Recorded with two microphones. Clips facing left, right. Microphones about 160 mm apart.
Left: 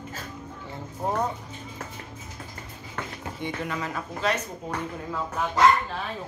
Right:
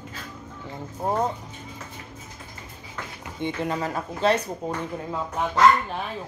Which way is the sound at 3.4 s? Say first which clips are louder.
Right 5 dB; 30° right (ahead or behind).